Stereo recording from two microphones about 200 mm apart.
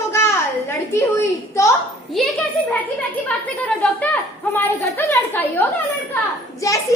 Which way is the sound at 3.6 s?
5° left (ahead or behind).